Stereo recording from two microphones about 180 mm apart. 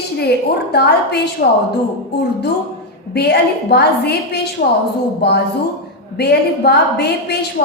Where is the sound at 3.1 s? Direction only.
65° left (ahead or behind).